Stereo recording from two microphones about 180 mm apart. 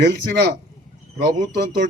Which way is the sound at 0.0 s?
70° right (ahead or behind).